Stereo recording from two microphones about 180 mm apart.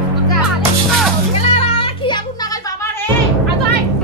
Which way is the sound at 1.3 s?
35° left (ahead or behind).